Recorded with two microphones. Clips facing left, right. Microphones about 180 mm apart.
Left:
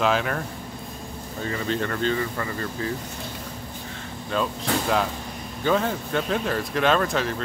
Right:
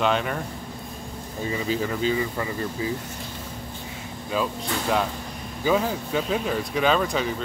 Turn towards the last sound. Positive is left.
turn(degrees=0)  # may be behind; listen again after turning